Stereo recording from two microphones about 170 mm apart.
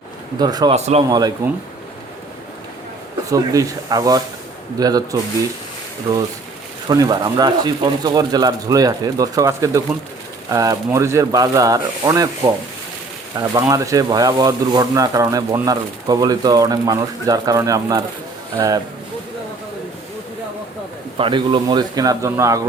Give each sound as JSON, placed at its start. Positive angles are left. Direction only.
{"t": 0.3, "sound": "speech", "side_deg": -25}
{"t": 0.7, "sound": "a man's voice", "side_deg": -40}
{"t": 3.2, "sound": "speech", "side_deg": -20}
{"t": 6.8, "sound": "speech", "side_deg": -25}
{"t": 21.2, "sound": "speech", "side_deg": -30}